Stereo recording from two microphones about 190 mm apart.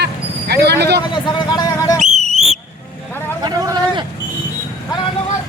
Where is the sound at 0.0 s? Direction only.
60° right (ahead or behind).